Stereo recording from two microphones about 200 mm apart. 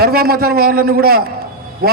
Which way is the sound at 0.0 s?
50° right (ahead or behind).